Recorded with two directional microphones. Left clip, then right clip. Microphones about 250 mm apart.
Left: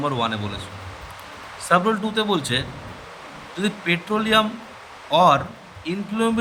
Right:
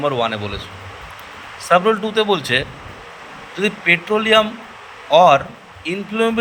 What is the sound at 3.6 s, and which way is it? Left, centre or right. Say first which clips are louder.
A man's voice: right 8 dB; centre.